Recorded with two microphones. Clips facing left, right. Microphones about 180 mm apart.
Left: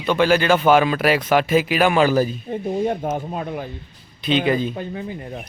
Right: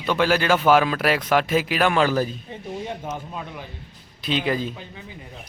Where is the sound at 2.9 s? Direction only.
50° left (ahead or behind).